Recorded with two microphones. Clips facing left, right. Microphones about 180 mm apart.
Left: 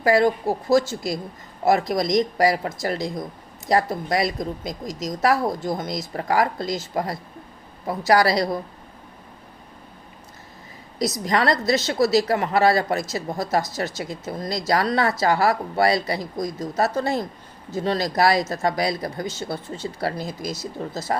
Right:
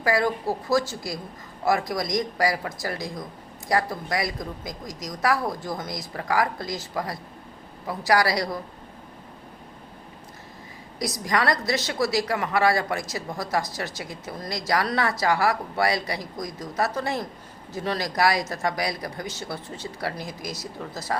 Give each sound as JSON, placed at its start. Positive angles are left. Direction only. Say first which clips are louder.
{"t": 0.0, "sound": "speech", "louder": "left 5 dB", "side_deg": 25}
{"t": 11.3, "sound": "speech", "louder": "left 3 dB", "side_deg": 25}